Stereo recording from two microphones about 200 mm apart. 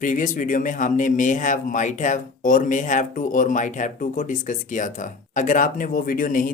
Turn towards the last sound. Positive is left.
turn(degrees=40)  # may be behind; listen again after turning